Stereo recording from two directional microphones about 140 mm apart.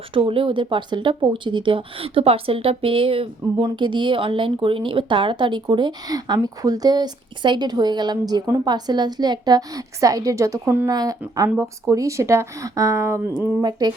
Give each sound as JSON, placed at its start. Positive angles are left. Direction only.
{"t": 0.1, "sound": "a woman's voice", "side_deg": -40}
{"t": 13.6, "sound": "speech", "side_deg": -30}